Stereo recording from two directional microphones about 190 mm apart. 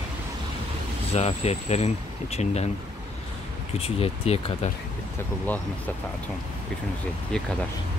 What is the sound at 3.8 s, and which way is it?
Speech, 30° left (ahead or behind).